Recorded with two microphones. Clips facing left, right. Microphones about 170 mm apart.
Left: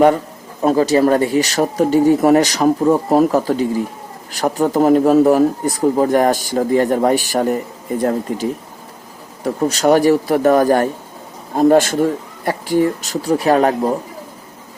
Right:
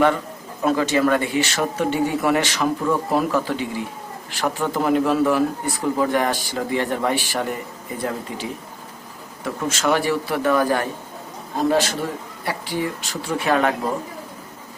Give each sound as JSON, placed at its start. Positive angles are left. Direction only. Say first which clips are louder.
{"t": 0.6, "sound": "a man's voice", "louder": "left 6 dB", "side_deg": 40}